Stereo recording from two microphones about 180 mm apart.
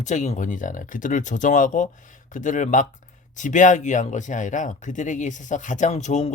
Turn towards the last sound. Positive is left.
turn(degrees=40)  # may be behind; listen again after turning